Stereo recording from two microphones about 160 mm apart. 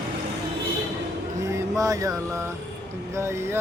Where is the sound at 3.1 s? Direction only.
15° right (ahead or behind).